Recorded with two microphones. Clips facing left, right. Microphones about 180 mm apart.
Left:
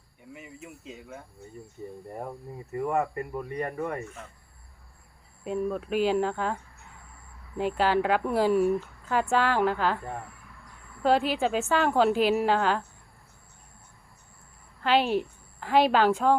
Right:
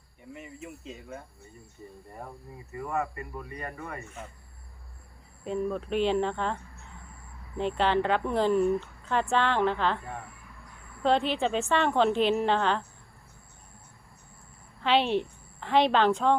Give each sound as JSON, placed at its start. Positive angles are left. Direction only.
{"t": 0.3, "sound": "a woman's voice", "side_deg": 0}
{"t": 2.7, "sound": "speech", "side_deg": 50}
{"t": 5.5, "sound": "a woman's voice", "side_deg": 5}
{"t": 11.0, "sound": "a woman's voice", "side_deg": 5}
{"t": 14.8, "sound": "a woman's voice", "side_deg": 0}